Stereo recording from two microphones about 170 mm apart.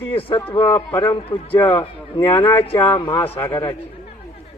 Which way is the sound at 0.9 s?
20° left (ahead or behind).